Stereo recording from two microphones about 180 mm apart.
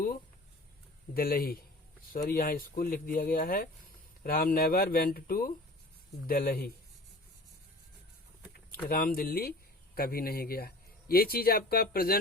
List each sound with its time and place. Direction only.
1.1 s a man's voice: 55° left (ahead or behind)
8.9 s a man's voice: 55° left (ahead or behind)